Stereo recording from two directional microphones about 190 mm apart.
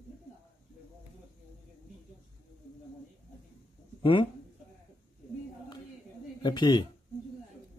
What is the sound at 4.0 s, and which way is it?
Speech, 25° left (ahead or behind).